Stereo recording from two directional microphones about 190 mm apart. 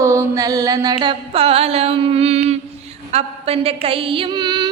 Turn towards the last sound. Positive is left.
turn(degrees=-20)  # may be behind; listen again after turning